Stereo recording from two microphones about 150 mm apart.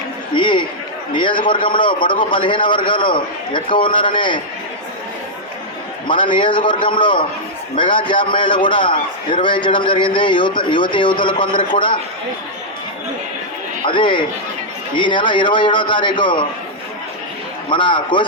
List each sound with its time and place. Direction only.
0.3 s a man's voice: 30° left (ahead or behind)
6.1 s a man's voice: 30° left (ahead or behind)
13.8 s a man's voice: 35° left (ahead or behind)
17.7 s a man's voice: 30° left (ahead or behind)